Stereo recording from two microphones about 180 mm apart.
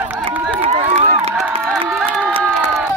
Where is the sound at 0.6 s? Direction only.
35° right (ahead or behind).